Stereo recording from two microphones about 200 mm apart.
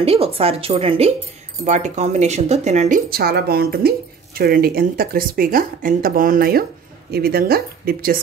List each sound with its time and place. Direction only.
0.0 s speech: 30° right (ahead or behind)
3.1 s speech: 50° right (ahead or behind)